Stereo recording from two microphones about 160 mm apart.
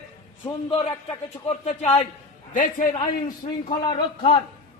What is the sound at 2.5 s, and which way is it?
Speech, 55° left (ahead or behind).